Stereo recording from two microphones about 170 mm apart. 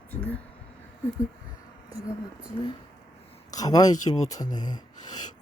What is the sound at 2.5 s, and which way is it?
Speech, 30° left (ahead or behind).